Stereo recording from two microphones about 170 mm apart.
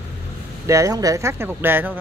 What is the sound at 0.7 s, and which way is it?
Speech, 20° right (ahead or behind).